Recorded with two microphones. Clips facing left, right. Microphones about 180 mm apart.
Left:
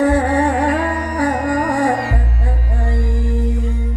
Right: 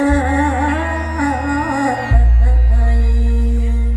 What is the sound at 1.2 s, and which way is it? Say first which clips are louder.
Music: even; 35° left (ahead or behind).